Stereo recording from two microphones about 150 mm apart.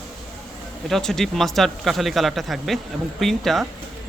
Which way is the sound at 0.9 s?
Centre (ahead or behind).